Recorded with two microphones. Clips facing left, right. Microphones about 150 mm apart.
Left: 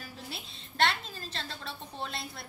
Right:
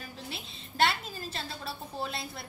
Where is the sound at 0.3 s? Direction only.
5° right (ahead or behind).